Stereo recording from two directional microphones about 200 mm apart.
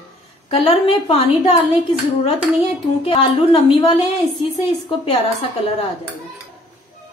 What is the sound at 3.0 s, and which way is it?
A woman's voice, 30° left (ahead or behind).